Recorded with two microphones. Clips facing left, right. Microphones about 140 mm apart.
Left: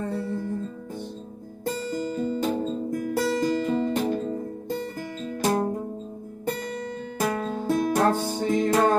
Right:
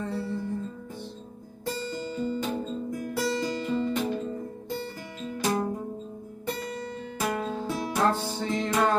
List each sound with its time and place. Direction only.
0.1 s music: 50° left (ahead or behind)
2.1 s music: 40° left (ahead or behind)
5.2 s music: 40° left (ahead or behind)
7.2 s music: 45° left (ahead or behind)